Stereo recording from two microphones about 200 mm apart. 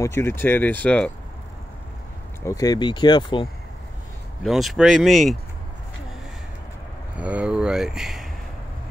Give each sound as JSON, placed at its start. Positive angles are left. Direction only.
{"t": 0.0, "sound": "speech", "side_deg": 10}
{"t": 2.4, "sound": "speech", "side_deg": 15}
{"t": 4.4, "sound": "speech", "side_deg": 0}
{"t": 7.2, "sound": "speech", "side_deg": -5}